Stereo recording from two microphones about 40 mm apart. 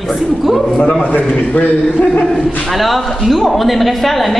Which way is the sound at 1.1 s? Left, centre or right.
Left.